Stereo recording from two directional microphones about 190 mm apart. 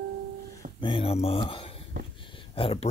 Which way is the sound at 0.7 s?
25° left (ahead or behind).